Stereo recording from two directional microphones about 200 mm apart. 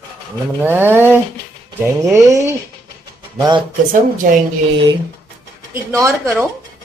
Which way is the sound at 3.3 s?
20° right (ahead or behind).